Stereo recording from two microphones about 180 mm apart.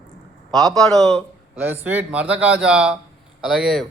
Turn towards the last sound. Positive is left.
turn(degrees=0)  # may be behind; listen again after turning